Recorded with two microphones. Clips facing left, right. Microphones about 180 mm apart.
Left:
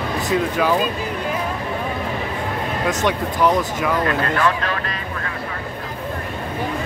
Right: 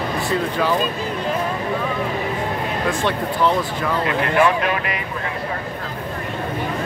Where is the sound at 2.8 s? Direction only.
15° left (ahead or behind).